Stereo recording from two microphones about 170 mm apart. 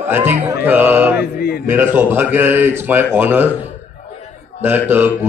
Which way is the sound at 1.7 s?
10° right (ahead or behind).